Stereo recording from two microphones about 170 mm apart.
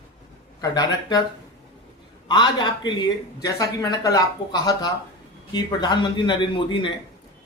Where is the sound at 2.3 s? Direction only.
25° left (ahead or behind).